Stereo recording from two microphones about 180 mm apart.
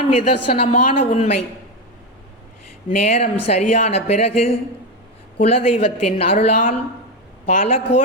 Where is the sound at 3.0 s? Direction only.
35° left (ahead or behind).